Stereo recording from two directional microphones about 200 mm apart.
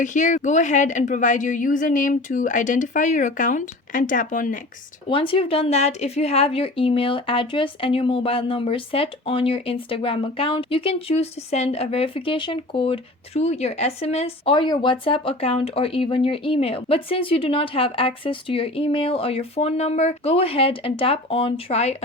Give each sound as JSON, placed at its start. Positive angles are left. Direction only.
{"t": 0.0, "sound": "a woman's voice", "side_deg": 40}
{"t": 5.0, "sound": "a woman's voice", "side_deg": 25}